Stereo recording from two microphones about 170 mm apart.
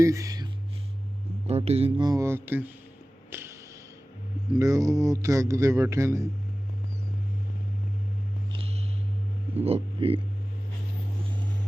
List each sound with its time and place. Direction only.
0.0 s a sound: 20° right (ahead or behind)
1.5 s speech: 35° right (ahead or behind)
2.0 s speech: 15° right (ahead or behind)
4.5 s speech: 20° right (ahead or behind)
9.6 s speech: 35° right (ahead or behind)